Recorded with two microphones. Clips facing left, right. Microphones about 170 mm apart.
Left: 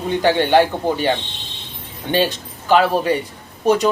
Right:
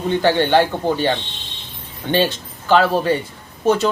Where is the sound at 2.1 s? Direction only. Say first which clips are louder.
Even; 10° left (ahead or behind).